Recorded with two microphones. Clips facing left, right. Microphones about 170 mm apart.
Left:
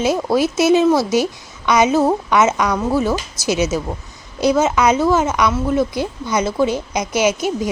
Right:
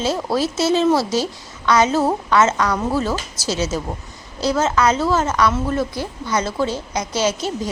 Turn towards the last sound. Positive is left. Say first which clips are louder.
# left 4 dB
turn(degrees=15)  # may be behind; listen again after turning